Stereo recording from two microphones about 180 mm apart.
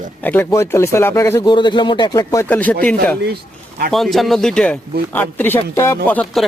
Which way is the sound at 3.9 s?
Centre (ahead or behind).